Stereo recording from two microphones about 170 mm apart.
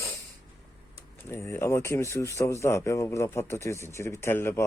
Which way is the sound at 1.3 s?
15° left (ahead or behind).